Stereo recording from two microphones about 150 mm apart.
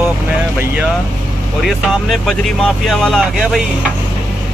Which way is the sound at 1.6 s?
Centre (ahead or behind).